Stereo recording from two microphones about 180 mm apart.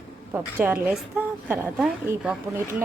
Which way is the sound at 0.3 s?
10° right (ahead or behind).